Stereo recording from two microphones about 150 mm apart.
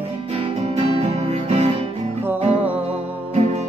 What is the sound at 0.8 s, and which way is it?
Music, 45° right (ahead or behind).